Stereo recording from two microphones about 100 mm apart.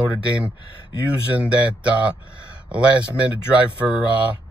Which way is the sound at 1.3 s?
10° right (ahead or behind).